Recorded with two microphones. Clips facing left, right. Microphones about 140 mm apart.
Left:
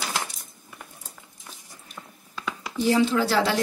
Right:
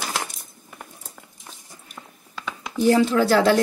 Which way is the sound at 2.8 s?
50° right (ahead or behind).